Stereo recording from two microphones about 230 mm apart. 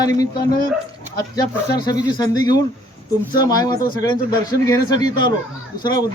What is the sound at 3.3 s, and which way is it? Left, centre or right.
Speech, centre.